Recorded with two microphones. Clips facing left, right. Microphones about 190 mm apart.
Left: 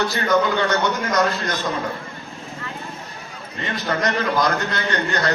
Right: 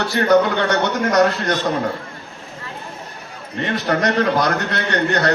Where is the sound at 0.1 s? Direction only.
65° right (ahead or behind).